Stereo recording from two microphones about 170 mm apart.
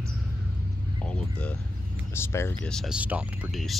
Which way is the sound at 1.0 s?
5° left (ahead or behind).